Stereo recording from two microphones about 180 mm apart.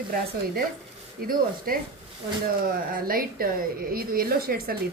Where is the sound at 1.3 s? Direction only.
55° right (ahead or behind).